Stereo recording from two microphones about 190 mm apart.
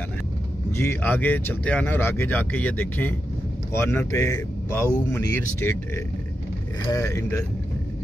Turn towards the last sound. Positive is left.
turn(degrees=15)  # may be behind; listen again after turning